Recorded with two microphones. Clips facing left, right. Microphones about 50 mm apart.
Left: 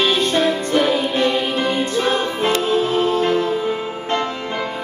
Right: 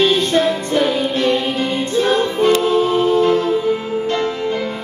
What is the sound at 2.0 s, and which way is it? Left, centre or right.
Music, centre.